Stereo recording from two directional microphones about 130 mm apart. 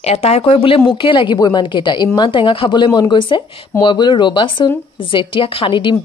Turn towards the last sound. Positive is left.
turn(degrees=40)  # may be behind; listen again after turning